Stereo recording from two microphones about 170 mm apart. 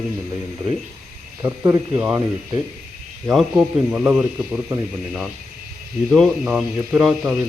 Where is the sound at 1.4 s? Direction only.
20° right (ahead or behind).